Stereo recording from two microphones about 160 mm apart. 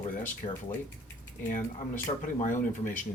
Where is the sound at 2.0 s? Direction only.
55° left (ahead or behind).